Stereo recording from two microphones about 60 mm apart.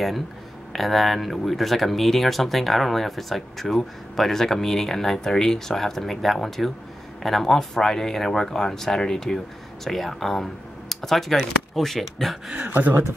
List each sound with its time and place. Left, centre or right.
0.7 s speech: centre
12.5 s speech: right